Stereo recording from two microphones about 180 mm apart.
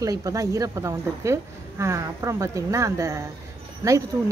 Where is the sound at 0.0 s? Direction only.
20° right (ahead or behind).